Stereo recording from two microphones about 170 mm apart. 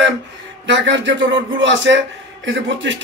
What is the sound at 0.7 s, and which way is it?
A man's voice, 90° right.